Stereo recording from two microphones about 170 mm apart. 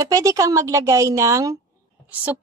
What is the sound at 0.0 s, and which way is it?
A woman's voice, 20° right (ahead or behind).